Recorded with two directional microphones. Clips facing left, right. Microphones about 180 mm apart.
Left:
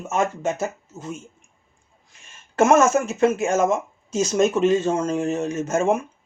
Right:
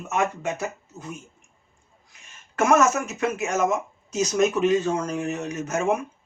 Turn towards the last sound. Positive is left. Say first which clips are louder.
# left 3 dB
turn(degrees=30)  # may be behind; listen again after turning